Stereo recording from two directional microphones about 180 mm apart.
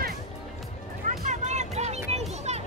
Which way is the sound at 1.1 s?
40° right (ahead or behind).